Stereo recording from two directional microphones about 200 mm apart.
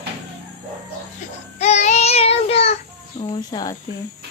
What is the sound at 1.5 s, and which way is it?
Child singing, 35° left (ahead or behind).